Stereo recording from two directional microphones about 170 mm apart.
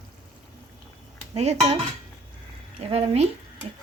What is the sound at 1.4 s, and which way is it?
Speech, 40° right (ahead or behind).